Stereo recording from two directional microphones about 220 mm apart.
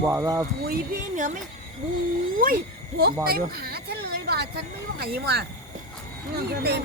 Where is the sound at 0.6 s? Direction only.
40° right (ahead or behind).